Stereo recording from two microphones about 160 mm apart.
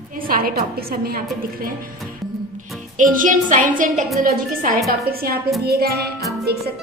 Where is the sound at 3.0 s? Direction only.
55° right (ahead or behind); by 5.3 s 70° right (ahead or behind).